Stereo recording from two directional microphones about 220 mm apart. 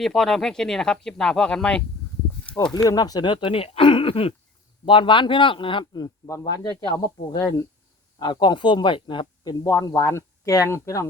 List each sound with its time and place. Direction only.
0.0 s speech: centre (ahead or behind)
2.4 s a sound: 5° left (ahead or behind)
2.7 s speech: 20° left (ahead or behind)
8.2 s speech: 20° left (ahead or behind)